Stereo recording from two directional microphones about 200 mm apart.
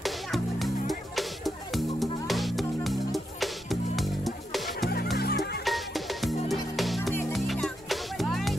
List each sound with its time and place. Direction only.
0.0 s music: centre (ahead or behind)
5.1 s music: 55° left (ahead or behind)
5.7 s music: centre (ahead or behind)